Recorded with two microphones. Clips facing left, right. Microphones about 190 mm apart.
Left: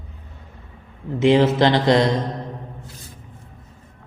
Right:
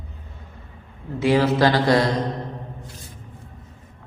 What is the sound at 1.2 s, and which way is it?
Speech, 20° left (ahead or behind).